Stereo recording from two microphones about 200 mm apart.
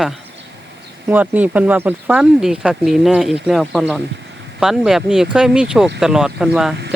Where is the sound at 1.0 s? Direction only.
5° right (ahead or behind).